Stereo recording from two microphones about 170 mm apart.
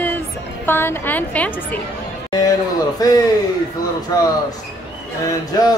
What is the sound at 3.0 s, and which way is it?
Speech, 20° left (ahead or behind).